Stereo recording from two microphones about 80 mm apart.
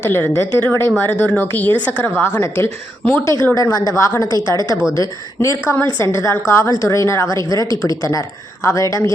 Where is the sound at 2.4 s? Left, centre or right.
Left.